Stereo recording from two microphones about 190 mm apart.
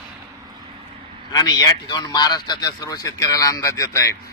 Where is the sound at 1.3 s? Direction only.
20° left (ahead or behind).